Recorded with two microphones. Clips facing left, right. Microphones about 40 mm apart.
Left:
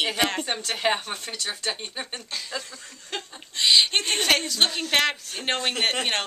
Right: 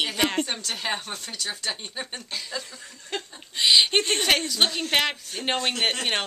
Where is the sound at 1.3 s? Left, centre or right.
Centre.